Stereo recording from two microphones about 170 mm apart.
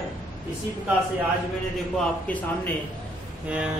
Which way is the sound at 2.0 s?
10° left (ahead or behind).